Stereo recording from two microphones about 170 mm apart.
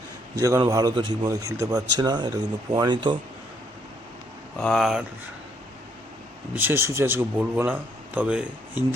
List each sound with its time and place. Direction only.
0.3 s a man's voice: 15° right (ahead or behind)
4.5 s speech: 5° left (ahead or behind)
6.6 s a man's voice: 15° right (ahead or behind)